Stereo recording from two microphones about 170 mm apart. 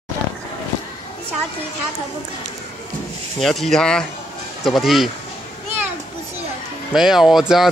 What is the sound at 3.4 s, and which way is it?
Speech, centre (ahead or behind).